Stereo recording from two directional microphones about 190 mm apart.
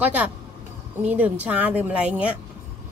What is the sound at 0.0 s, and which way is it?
A woman's voice, 5° right (ahead or behind).